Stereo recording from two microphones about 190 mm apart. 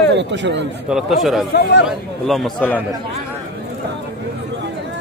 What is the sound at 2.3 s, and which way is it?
Speech, centre (ahead or behind).